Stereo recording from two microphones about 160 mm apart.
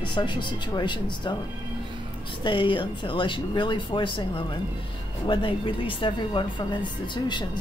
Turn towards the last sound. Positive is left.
turn(degrees=30)  # may be behind; listen again after turning